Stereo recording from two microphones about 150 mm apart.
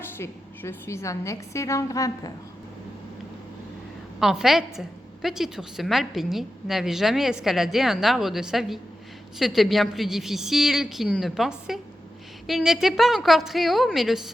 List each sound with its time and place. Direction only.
0.2 s a woman's voice: 15° left (ahead or behind)
4.2 s a woman's voice: centre (ahead or behind)